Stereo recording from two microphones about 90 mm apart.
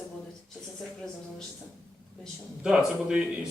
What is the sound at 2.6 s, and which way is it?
Speech, 10° right (ahead or behind).